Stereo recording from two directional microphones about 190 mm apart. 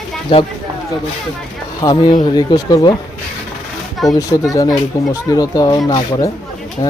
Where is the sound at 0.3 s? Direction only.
25° left (ahead or behind).